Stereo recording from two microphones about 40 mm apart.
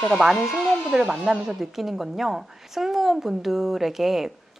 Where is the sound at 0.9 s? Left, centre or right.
Right.